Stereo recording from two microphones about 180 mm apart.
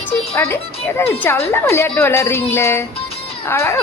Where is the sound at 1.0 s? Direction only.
15° left (ahead or behind).